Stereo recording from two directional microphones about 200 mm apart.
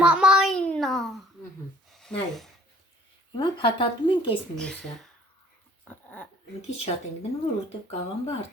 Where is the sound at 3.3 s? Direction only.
25° left (ahead or behind).